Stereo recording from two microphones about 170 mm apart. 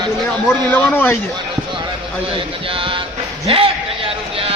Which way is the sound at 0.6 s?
10° left (ahead or behind).